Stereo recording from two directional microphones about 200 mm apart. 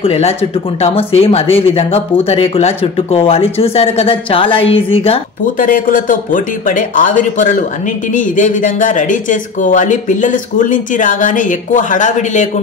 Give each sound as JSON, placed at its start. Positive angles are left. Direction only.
{"t": 0.0, "sound": "speech", "side_deg": 30}
{"t": 5.6, "sound": "speech", "side_deg": 45}